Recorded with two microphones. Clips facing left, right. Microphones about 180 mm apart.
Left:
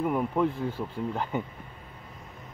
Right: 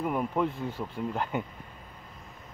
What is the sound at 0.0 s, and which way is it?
Speech, centre (ahead or behind).